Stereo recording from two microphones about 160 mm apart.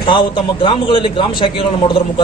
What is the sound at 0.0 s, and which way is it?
A man's voice, 30° left (ahead or behind).